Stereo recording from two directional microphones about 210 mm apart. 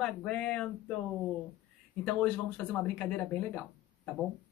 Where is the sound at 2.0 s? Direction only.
5° left (ahead or behind).